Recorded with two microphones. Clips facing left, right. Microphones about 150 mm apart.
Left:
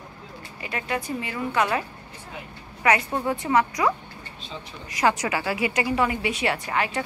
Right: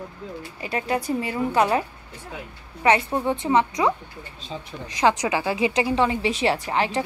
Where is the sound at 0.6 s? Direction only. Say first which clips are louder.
Right 4 dB; 35° right (ahead or behind).